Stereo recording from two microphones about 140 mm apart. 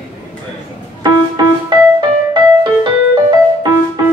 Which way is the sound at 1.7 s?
30° right (ahead or behind).